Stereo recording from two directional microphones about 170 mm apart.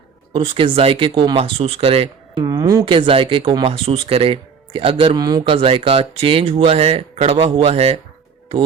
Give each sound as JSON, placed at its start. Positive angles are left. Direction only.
{"t": 0.5, "sound": "speech", "side_deg": -30}